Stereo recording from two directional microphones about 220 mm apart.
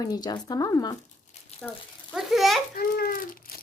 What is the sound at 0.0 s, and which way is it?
Speech, 20° left (ahead or behind).